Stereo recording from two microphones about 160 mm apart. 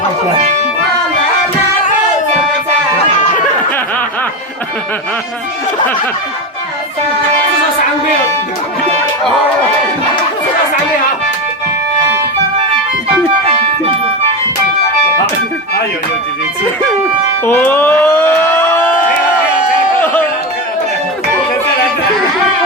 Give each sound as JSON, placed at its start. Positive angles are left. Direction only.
{"t": 13.1, "sound": "music", "side_deg": -35}
{"t": 17.4, "sound": "speech", "side_deg": 15}
{"t": 18.5, "sound": "a sound", "side_deg": 15}